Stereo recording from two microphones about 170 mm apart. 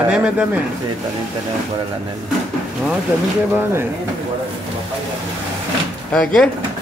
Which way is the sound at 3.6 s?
15° right (ahead or behind).